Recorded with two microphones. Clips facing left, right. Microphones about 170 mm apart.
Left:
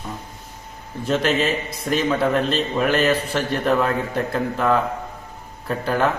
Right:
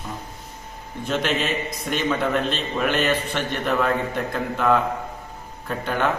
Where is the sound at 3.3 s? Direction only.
35° left (ahead or behind).